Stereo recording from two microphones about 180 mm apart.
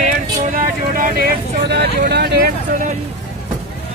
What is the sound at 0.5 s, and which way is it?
Vehicle, 50° right (ahead or behind).